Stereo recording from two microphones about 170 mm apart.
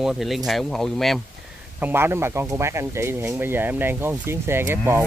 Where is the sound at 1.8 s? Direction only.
10° right (ahead or behind).